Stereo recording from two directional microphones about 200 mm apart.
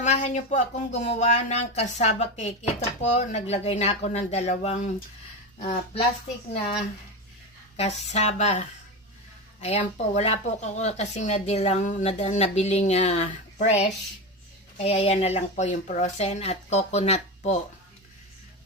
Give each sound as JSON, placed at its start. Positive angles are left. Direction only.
{"t": 0.0, "sound": "speech", "side_deg": 35}
{"t": 7.8, "sound": "speech", "side_deg": 35}
{"t": 14.8, "sound": "speech", "side_deg": 30}